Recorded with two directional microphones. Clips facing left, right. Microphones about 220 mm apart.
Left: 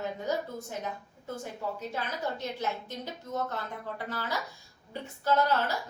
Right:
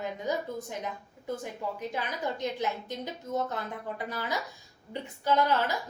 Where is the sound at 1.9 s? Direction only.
15° right (ahead or behind).